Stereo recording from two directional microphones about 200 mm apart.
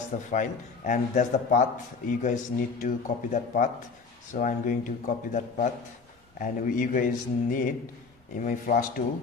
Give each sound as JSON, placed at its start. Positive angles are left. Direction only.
{"t": 0.3, "sound": "a man's voice", "side_deg": 40}